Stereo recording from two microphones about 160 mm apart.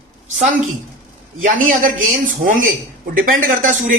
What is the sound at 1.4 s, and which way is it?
A man's voice, 55° right (ahead or behind).